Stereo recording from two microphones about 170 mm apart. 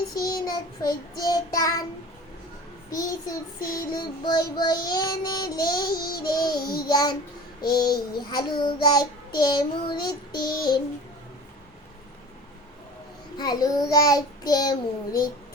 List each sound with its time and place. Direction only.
0.2 s child singing: 20° left (ahead or behind)
2.9 s child singing: 20° left (ahead or behind)
13.3 s child singing: 20° left (ahead or behind)